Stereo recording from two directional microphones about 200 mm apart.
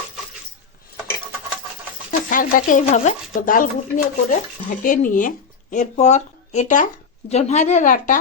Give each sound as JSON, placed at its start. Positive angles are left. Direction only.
{"t": 2.3, "sound": "speech", "side_deg": 40}